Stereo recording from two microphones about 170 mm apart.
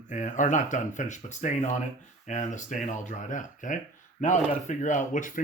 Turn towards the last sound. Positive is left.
turn(degrees=50)  # may be behind; listen again after turning